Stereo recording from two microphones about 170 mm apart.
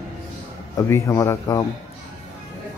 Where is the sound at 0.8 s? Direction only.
15° left (ahead or behind).